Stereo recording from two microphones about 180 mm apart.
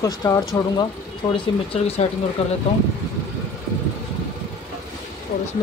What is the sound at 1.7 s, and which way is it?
Speech, 35° left (ahead or behind).